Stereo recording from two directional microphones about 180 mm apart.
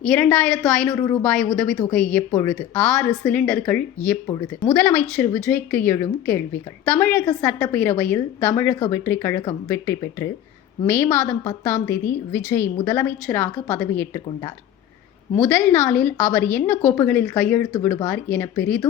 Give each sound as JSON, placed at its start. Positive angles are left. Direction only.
{"t": 0.0, "sound": "a woman's voice", "side_deg": 5}
{"t": 0.9, "sound": "a woman's voice", "side_deg": 20}
{"t": 1.2, "sound": "a woman's voice", "side_deg": 5}